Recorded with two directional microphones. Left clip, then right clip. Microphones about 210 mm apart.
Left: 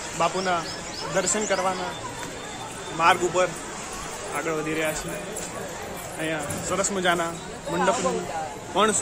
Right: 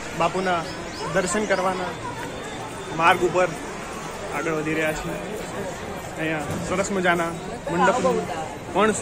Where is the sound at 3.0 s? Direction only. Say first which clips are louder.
Right 2 dB; 5° left (ahead or behind).